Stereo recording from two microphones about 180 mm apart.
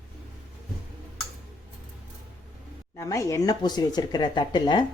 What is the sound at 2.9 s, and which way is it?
Speech, 20° left (ahead or behind).